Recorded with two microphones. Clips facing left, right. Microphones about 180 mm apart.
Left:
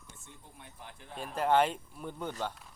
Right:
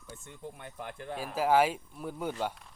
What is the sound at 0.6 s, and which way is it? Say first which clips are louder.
Speech: right 6 dB; 70° right (ahead or behind).